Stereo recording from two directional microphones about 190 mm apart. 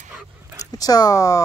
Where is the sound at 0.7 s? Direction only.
20° left (ahead or behind).